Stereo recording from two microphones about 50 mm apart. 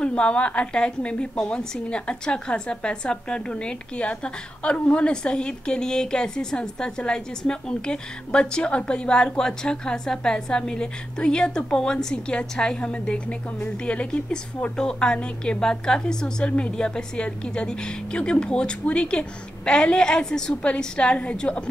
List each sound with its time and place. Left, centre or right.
0.0 s a woman's voice: left
4.7 s a woman's voice: left
5.0 s a woman's voice: centre